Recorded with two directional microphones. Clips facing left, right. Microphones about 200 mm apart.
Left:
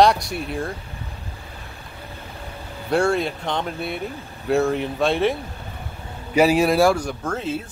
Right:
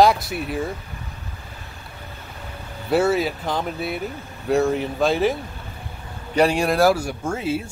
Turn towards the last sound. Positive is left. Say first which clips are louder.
# right 1 dB
turn(degrees=-10)  # may be behind; listen again after turning